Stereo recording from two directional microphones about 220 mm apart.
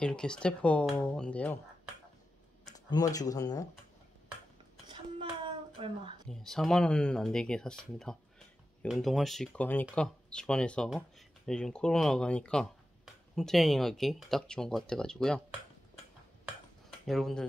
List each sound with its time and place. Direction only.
0.0 s speech: 5° left (ahead or behind)
2.6 s speech: 15° left (ahead or behind)
5.8 s a woman's voice: 25° right (ahead or behind)
6.2 s speech: centre (ahead or behind)
17.0 s speech: centre (ahead or behind)